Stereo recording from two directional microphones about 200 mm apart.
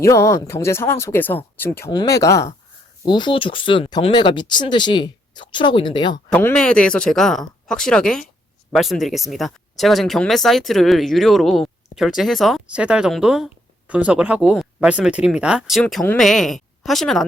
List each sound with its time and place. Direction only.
0.0 s speech: 15° left (ahead or behind)
6.3 s speech: 5° left (ahead or behind)